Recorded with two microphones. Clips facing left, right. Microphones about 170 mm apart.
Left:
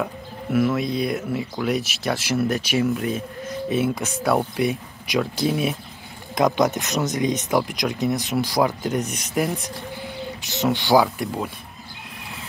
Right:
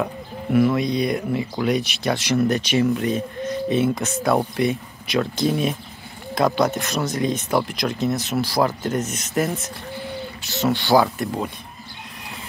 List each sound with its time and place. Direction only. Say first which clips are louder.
0.0 s speech: right 2 dB; centre (ahead or behind)